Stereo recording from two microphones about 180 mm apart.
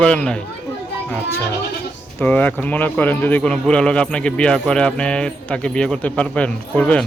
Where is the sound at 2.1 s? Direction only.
10° left (ahead or behind).